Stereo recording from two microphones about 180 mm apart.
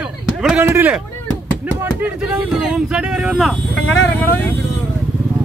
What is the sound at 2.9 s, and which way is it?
Speech, 5° right (ahead or behind).